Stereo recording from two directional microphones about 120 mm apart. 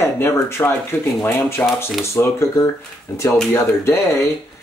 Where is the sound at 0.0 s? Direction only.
20° left (ahead or behind).